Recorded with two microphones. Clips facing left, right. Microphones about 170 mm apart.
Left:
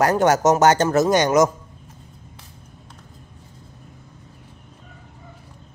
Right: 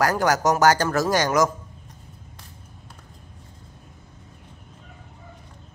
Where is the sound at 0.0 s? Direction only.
25° left (ahead or behind).